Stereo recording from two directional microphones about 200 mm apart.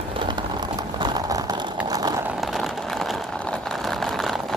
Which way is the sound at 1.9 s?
20° right (ahead or behind).